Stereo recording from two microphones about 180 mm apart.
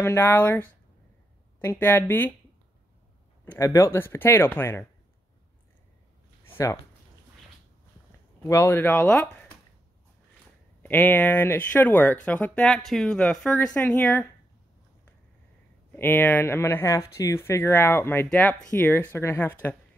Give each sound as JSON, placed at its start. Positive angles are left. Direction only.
{"t": 0.0, "sound": "speech", "side_deg": 15}
{"t": 3.4, "sound": "speech", "side_deg": 15}
{"t": 6.5, "sound": "speech", "side_deg": 15}
{"t": 8.4, "sound": "speech", "side_deg": 15}
{"t": 10.8, "sound": "speech", "side_deg": 10}
{"t": 16.0, "sound": "speech", "side_deg": 10}